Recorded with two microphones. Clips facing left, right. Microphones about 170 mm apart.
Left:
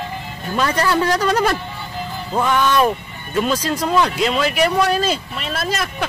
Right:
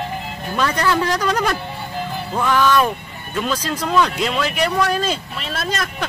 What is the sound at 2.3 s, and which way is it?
Speech, 25° left (ahead or behind).